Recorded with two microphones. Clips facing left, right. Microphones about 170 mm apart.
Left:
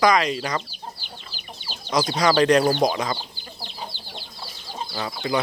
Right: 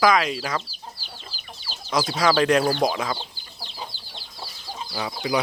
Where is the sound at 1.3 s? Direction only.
35° right (ahead or behind).